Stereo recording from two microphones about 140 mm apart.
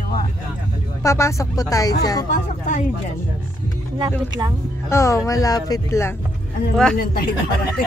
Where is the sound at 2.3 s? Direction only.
65° left (ahead or behind).